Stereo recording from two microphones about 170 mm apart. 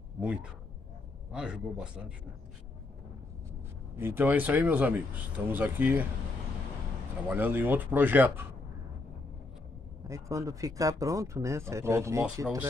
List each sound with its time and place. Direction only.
0.2 s speech: 10° right (ahead or behind)
3.9 s speech: 15° right (ahead or behind)
7.2 s speech: 10° right (ahead or behind)
10.0 s speech: 20° right (ahead or behind)